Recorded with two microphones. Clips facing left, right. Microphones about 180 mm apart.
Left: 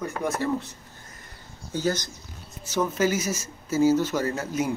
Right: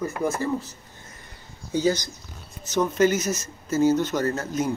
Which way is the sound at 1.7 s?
15° right (ahead or behind).